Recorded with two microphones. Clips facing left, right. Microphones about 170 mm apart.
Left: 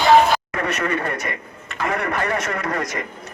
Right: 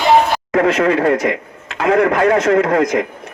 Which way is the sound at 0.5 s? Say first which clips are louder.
Right 10 dB; 90° right.